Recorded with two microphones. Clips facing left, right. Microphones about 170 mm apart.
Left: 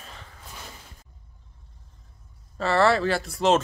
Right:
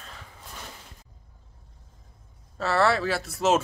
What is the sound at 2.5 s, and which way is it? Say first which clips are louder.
Speech: left 2 dB; centre (ahead or behind).